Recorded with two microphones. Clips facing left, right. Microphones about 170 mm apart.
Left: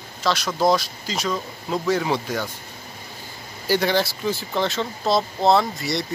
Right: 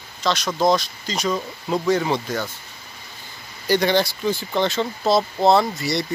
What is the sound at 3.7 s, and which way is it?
Speech, 5° left (ahead or behind).